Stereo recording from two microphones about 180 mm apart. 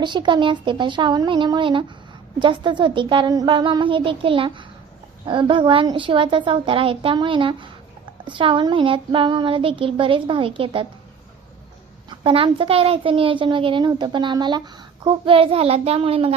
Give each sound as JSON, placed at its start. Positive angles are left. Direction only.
{"t": 0.0, "sound": "speech", "side_deg": -25}
{"t": 12.2, "sound": "a child's voice", "side_deg": -30}